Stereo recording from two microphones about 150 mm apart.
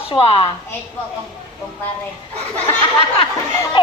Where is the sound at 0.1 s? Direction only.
35° left (ahead or behind).